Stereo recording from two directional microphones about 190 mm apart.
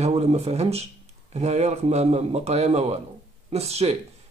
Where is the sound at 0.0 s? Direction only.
35° right (ahead or behind).